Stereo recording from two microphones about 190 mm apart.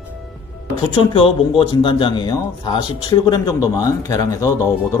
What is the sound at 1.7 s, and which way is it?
A man's voice, 25° left (ahead or behind).